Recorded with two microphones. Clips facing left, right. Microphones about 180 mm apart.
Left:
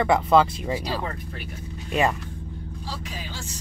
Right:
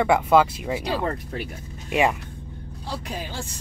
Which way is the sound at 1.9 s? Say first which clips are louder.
Right 2 dB; 15° right (ahead or behind).